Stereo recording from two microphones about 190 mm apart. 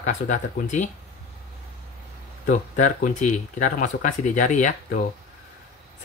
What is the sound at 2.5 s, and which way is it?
Speech, 45° left (ahead or behind).